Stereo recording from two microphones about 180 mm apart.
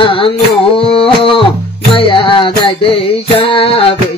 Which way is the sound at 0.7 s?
30° left (ahead or behind).